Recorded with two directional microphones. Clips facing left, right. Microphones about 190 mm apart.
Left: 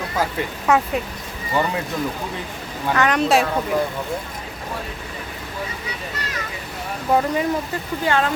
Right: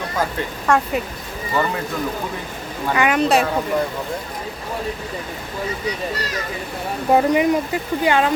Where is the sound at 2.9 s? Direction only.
10° right (ahead or behind).